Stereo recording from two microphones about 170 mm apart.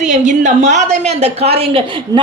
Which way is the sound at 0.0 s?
45° right (ahead or behind).